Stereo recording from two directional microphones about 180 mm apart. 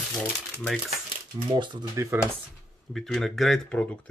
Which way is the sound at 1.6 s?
25° right (ahead or behind).